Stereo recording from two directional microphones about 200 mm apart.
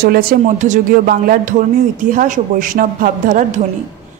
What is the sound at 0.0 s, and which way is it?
A woman's voice, 45° right (ahead or behind).